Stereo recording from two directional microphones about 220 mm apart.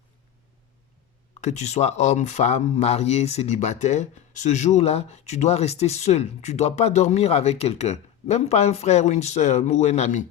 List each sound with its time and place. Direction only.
1.4 s speech: 30° left (ahead or behind)